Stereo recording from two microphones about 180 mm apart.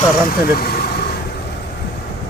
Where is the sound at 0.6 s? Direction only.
60° left (ahead or behind).